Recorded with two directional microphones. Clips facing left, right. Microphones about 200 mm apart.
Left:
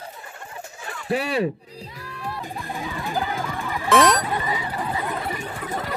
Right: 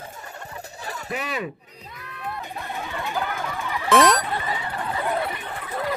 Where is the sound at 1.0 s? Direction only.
35° left (ahead or behind).